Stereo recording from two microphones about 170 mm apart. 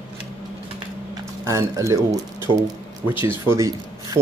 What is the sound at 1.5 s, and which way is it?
Speech, 20° right (ahead or behind).